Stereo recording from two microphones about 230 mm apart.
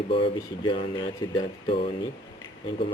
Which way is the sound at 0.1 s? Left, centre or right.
Left.